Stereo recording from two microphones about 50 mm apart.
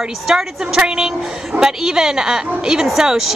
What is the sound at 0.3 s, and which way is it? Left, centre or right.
A woman's voice, centre.